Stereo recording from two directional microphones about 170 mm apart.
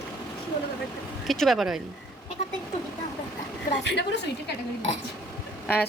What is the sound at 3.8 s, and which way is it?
Speech, 85° left.